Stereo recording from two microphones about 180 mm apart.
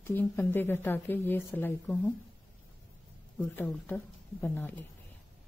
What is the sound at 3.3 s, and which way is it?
Speech, 10° left (ahead or behind).